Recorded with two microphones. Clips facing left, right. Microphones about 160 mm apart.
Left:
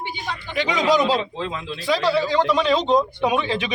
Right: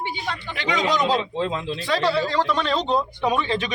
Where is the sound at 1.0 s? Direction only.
25° right (ahead or behind).